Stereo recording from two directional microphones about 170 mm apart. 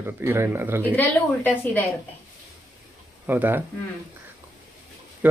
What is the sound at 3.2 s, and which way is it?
Speech, 10° right (ahead or behind).